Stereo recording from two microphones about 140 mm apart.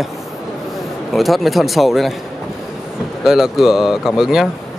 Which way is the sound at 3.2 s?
5° right (ahead or behind).